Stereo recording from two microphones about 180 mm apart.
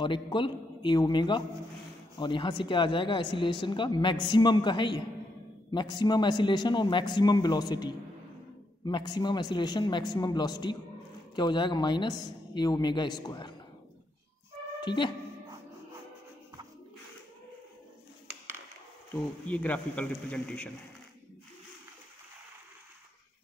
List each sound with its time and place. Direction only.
0.0 s a woman's voice: 25° left (ahead or behind)
14.8 s speech: 25° left (ahead or behind)
19.1 s a man's voice: 10° left (ahead or behind)